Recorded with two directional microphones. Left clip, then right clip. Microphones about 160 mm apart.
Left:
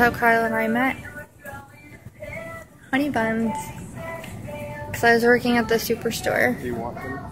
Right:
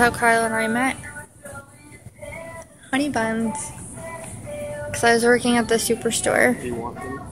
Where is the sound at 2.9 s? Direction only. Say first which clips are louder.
Even; 5° right (ahead or behind).